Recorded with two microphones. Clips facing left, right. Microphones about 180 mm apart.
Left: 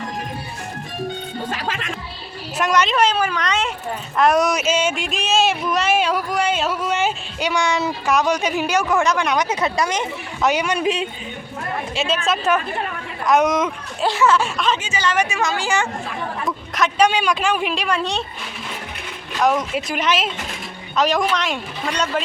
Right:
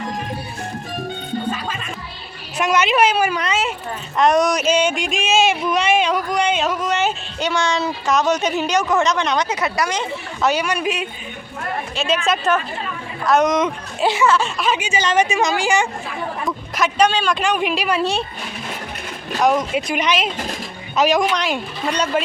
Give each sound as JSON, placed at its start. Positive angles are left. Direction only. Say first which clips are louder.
{"t": 1.5, "sound": "music", "louder": "right 1 dB", "side_deg": 90}
{"t": 2.6, "sound": "a woman's voice", "louder": "right 1 dB", "side_deg": -5}
{"t": 4.2, "sound": "speech", "louder": "right 1 dB", "side_deg": 5}
{"t": 9.5, "sound": "speech", "louder": "left 1 dB", "side_deg": 25}
{"t": 12.0, "sound": "speech", "louder": "right 3 dB", "side_deg": 0}
{"t": 13.2, "sound": "speech", "louder": "right 1 dB", "side_deg": 10}
{"t": 14.6, "sound": "a woman's voice", "louder": "right 1 dB", "side_deg": -10}
{"t": 16.7, "sound": "a sound", "louder": "even", "side_deg": 0}
{"t": 17.1, "sound": "speech", "louder": "even", "side_deg": 15}
{"t": 17.4, "sound": "speech", "louder": "right 1 dB", "side_deg": 0}
{"t": 19.4, "sound": "speech", "louder": "right 2 dB", "side_deg": 0}